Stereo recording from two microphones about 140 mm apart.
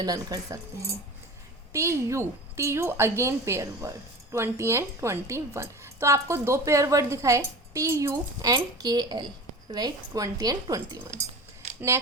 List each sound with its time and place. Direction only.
0.0 s a woman's voice: 25° right (ahead or behind)
1.7 s a woman's voice: 20° right (ahead or behind)